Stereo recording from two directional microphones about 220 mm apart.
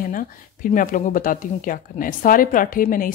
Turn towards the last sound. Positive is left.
turn(degrees=40)  # may be behind; listen again after turning